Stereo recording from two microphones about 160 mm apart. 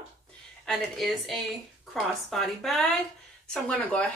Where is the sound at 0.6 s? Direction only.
Centre (ahead or behind).